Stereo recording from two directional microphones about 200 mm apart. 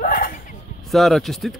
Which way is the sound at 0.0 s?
45° left (ahead or behind).